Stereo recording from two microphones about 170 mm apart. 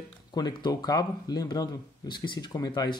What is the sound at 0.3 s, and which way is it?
Speech, 25° left (ahead or behind).